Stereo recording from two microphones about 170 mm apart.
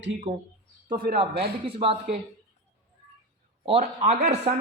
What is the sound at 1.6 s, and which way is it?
Speech, 35° right (ahead or behind).